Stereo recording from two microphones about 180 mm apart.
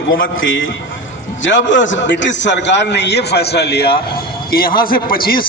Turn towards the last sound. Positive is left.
turn(degrees=55)  # may be behind; listen again after turning